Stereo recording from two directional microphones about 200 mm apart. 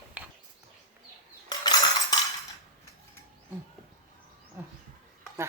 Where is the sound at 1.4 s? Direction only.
20° left (ahead or behind).